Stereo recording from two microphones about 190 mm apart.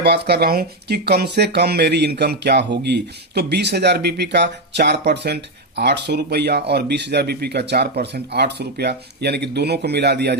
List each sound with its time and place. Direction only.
0.0 s speech: 60° right (ahead or behind)